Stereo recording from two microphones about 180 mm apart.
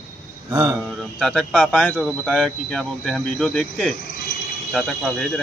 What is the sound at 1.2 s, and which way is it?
Speech, 5° left (ahead or behind).